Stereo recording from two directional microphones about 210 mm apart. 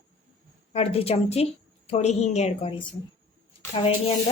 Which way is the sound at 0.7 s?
30° left (ahead or behind).